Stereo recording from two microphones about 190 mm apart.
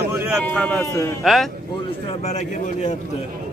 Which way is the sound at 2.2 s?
40° left (ahead or behind).